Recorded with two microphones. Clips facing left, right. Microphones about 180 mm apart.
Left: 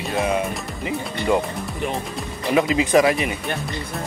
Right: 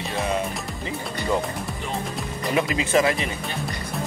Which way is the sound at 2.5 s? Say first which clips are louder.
Left 5 dB; 20° left (ahead or behind).